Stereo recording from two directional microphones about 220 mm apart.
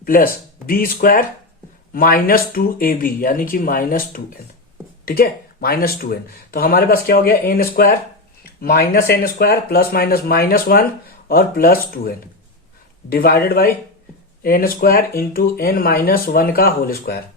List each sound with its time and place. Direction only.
0.0 s speech: 40° left (ahead or behind)